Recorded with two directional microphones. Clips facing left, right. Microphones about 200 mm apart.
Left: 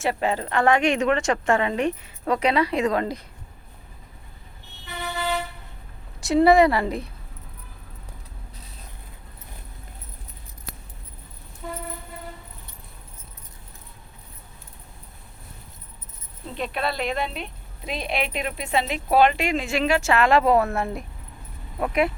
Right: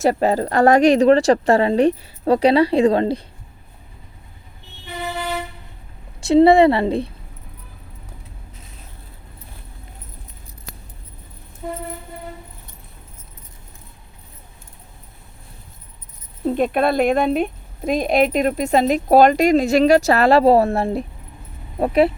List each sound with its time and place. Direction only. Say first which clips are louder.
0.0 s speech: right 7 dB; 40° right (ahead or behind)
6.1 s a woman's voice: right 5 dB; 25° right (ahead or behind)
16.5 s speech: right 10 dB; 50° right (ahead or behind); by 22.1 s 30° right (ahead or behind)